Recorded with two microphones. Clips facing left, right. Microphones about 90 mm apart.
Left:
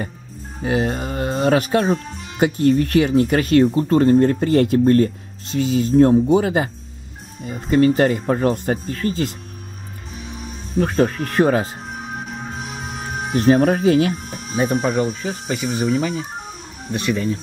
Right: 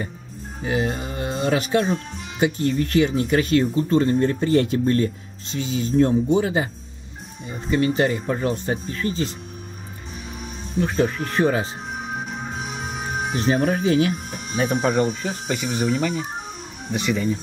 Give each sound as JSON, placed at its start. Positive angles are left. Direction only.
{"t": 0.7, "sound": "speech", "side_deg": 45}
{"t": 7.7, "sound": "speech", "side_deg": 50}
{"t": 10.3, "sound": "music", "side_deg": 0}
{"t": 10.8, "sound": "speech", "side_deg": 50}
{"t": 11.9, "sound": "music", "side_deg": 0}
{"t": 13.4, "sound": "speech", "side_deg": 50}
{"t": 14.1, "sound": "speech", "side_deg": 0}